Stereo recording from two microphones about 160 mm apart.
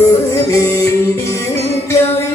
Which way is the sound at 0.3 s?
15° left (ahead or behind).